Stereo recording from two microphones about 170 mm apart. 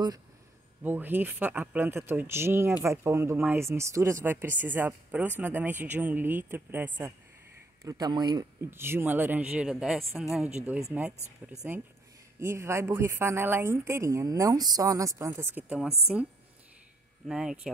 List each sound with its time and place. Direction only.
0.8 s speech: 10° right (ahead or behind)
8.5 s speech: 15° right (ahead or behind)
12.4 s speech: 15° right (ahead or behind)
17.3 s speech: 5° right (ahead or behind)